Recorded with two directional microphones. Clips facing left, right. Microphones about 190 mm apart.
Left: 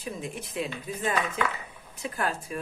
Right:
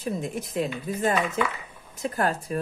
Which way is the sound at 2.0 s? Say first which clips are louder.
Right 5 dB; 40° right (ahead or behind).